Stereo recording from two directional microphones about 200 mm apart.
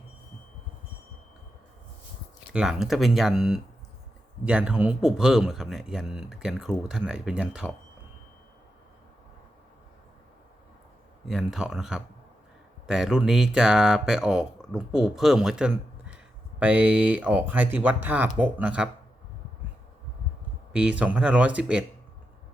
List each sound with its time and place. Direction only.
2.5 s speech: 5° right (ahead or behind)
11.3 s speech: centre (ahead or behind)
20.7 s speech: 5° right (ahead or behind)